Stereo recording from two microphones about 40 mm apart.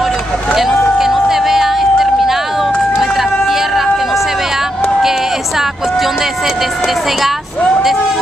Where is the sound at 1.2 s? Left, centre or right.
Centre.